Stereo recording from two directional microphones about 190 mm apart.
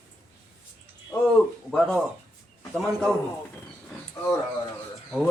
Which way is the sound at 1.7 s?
5° left (ahead or behind).